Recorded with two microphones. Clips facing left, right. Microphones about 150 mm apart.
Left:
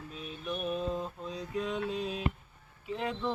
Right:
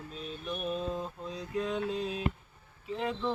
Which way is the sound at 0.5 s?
5° left (ahead or behind).